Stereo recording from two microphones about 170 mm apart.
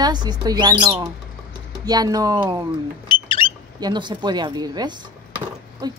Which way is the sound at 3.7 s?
25° right (ahead or behind).